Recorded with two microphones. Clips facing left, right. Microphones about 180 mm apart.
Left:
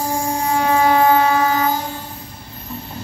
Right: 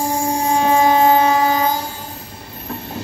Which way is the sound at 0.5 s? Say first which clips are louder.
Right 1 dB; 25° right (ahead or behind).